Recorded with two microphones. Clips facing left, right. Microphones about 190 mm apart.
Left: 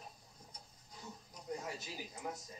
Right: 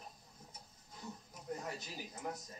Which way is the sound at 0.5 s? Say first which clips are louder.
Left 1 dB; 5° right (ahead or behind).